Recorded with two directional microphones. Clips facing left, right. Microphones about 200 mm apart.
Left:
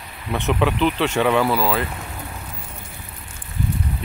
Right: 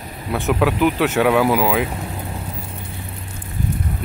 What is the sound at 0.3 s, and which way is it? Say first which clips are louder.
Speech: right 2 dB; 5° right (ahead or behind).